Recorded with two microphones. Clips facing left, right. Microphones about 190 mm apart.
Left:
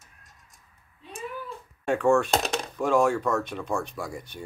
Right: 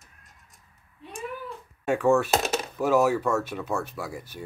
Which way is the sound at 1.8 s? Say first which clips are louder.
Even; 5° right (ahead or behind).